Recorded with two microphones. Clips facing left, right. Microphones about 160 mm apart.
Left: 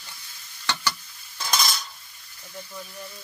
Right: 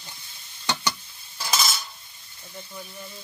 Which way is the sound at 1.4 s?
Centre (ahead or behind).